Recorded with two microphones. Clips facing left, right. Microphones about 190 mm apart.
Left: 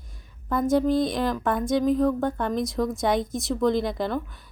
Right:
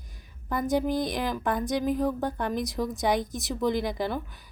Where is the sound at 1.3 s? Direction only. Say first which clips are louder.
Left 4 dB; centre (ahead or behind).